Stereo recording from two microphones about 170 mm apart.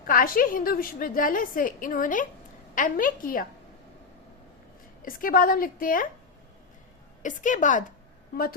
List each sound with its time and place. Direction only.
0.1 s a woman's voice: 55° left (ahead or behind)
5.0 s a woman's voice: 55° left (ahead or behind)
7.2 s a woman's voice: 50° left (ahead or behind)